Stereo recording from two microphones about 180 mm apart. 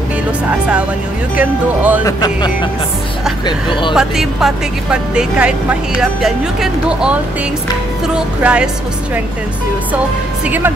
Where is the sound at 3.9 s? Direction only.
5° right (ahead or behind).